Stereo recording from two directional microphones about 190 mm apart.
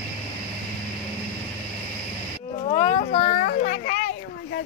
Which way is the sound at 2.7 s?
30° left (ahead or behind).